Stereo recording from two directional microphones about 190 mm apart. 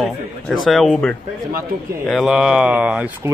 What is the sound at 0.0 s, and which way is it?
Speech, centre (ahead or behind).